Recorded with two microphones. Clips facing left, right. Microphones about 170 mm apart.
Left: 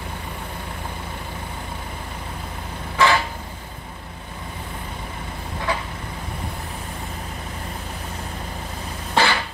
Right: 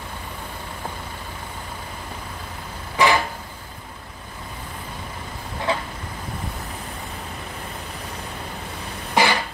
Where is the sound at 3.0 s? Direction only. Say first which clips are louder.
Even; 15° right (ahead or behind).